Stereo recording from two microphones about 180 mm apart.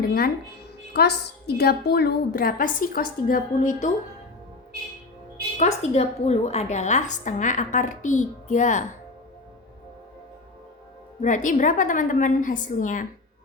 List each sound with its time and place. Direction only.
0.0 s a woman's voice: 55° left (ahead or behind)
5.5 s a woman's voice: 40° left (ahead or behind)
11.2 s a woman's voice: 45° left (ahead or behind)